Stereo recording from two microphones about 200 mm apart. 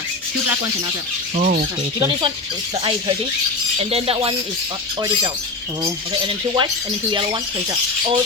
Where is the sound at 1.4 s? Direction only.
40° right (ahead or behind).